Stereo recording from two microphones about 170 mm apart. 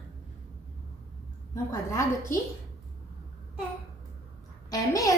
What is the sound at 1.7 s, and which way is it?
Speech, 15° left (ahead or behind).